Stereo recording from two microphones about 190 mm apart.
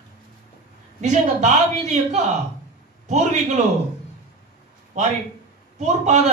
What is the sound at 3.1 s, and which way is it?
Speech, 40° right (ahead or behind).